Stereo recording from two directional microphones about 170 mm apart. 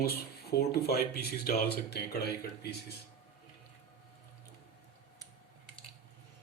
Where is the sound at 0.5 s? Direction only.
65° left (ahead or behind).